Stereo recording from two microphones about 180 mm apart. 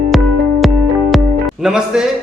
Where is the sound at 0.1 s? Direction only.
Centre (ahead or behind).